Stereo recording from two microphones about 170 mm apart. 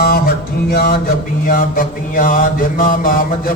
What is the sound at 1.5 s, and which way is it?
Mantra, 55° left (ahead or behind).